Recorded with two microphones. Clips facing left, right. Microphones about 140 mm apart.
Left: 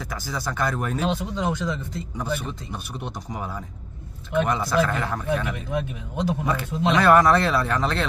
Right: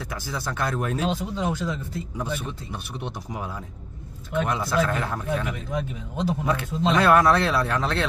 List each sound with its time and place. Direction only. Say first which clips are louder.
0.0 s speech: left 1 dB; centre (ahead or behind)